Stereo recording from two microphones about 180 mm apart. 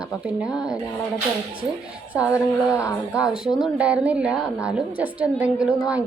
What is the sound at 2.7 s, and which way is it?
Speech, 15° left (ahead or behind).